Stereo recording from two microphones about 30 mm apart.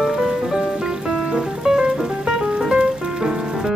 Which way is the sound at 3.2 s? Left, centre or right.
Centre.